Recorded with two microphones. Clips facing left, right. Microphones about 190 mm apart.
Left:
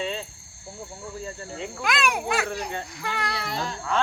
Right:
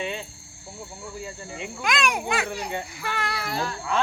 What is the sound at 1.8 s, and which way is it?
Speech, 5° left (ahead or behind).